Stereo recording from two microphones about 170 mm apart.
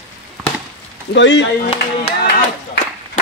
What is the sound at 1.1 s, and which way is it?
Speech, 90° left.